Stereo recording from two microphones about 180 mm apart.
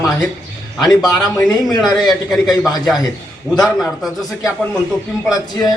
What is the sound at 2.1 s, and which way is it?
Speech, 20° left (ahead or behind).